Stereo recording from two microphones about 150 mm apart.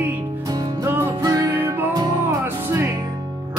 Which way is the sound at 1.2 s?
20° right (ahead or behind).